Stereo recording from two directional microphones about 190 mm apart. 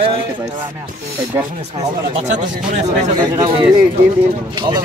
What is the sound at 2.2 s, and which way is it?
Speech, 40° right (ahead or behind).